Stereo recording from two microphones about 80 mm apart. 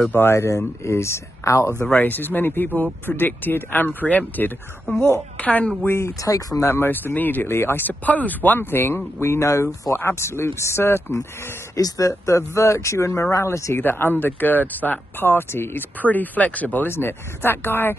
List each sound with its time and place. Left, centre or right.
0.1 s speech: left
1.9 s a woman's voice: left
5.9 s speech: left
6.2 s speech: left
6.7 s speech: left
11.7 s speech: left
13.8 s speech: left